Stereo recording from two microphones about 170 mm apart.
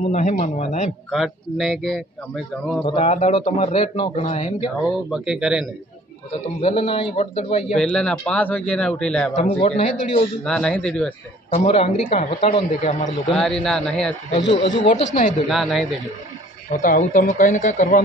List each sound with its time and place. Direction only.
0.0 s speech: 45° left (ahead or behind)
1.1 s a man's voice: centre (ahead or behind)
2.8 s a man's voice: 35° left (ahead or behind)
5.1 s a man's voice: 5° right (ahead or behind)
6.6 s a man's voice: 35° left (ahead or behind)
7.6 s a man's voice: 5° left (ahead or behind)
9.3 s speech: 40° left (ahead or behind)
10.4 s a man's voice: 5° left (ahead or behind)
11.5 s a man's voice: 40° left (ahead or behind)
13.3 s a man's voice: centre (ahead or behind)
14.4 s speech: 90° left
15.0 s speech: 45° left (ahead or behind)
15.4 s a man's voice: centre (ahead or behind)
16.7 s speech: 50° left (ahead or behind)